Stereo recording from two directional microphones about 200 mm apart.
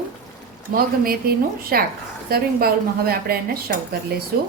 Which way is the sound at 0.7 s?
50° right (ahead or behind).